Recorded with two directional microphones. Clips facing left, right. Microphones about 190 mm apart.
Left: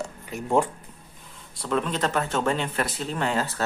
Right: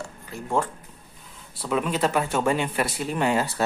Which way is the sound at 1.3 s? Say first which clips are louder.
Even; 5° right (ahead or behind).